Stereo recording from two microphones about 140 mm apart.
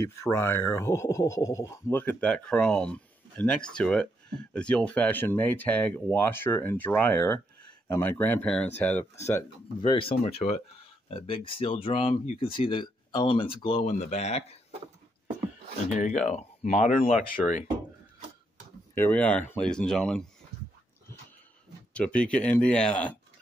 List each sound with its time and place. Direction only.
0.0 s speech: 20° left (ahead or behind)
9.8 s speech: 40° left (ahead or behind)
13.8 s speech: 55° left (ahead or behind)
16.0 s speech: 60° left (ahead or behind)
18.9 s speech: 10° left (ahead or behind)
21.9 s speech: 10° left (ahead or behind)